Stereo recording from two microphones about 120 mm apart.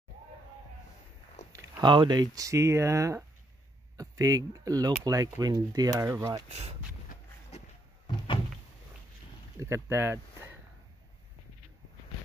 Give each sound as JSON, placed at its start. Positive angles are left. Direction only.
{"t": 1.8, "sound": "speech", "side_deg": -40}
{"t": 9.6, "sound": "speech", "side_deg": -20}